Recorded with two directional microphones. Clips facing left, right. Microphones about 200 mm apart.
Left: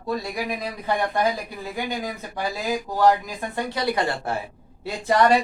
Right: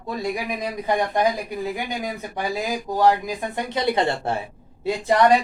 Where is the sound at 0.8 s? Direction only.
15° right (ahead or behind).